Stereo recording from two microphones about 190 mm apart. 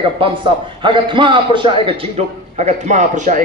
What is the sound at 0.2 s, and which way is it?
A man's voice, 30° right (ahead or behind).